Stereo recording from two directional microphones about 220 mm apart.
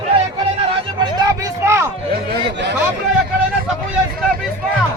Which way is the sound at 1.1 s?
15° right (ahead or behind).